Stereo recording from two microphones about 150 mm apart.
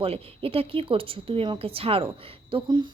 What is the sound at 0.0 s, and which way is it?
A woman's voice, 40° right (ahead or behind).